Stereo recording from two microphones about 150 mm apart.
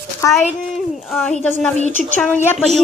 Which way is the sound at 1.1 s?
5° left (ahead or behind).